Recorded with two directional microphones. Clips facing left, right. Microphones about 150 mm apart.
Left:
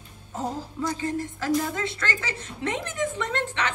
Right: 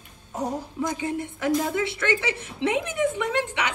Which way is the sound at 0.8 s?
15° right (ahead or behind).